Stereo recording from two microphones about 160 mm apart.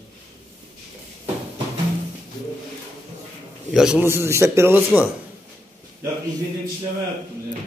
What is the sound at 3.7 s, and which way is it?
A man's voice, 5° right (ahead or behind).